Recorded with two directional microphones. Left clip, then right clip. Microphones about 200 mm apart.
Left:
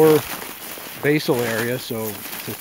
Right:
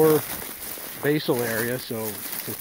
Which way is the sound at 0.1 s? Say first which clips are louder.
Left 5 dB; 50° right (ahead or behind).